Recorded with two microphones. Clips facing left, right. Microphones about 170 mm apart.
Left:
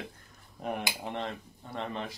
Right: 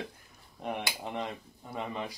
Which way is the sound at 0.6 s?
Centre (ahead or behind).